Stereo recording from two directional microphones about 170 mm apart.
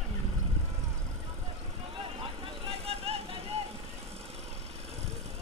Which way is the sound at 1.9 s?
30° right (ahead or behind).